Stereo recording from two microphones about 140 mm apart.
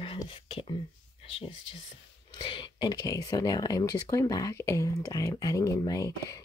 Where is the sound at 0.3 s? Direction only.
40° left (ahead or behind).